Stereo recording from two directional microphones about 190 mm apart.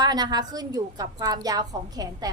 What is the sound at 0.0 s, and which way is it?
A woman's voice, 20° right (ahead or behind).